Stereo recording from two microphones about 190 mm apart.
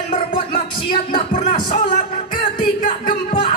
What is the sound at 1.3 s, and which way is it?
Music, 40° left (ahead or behind).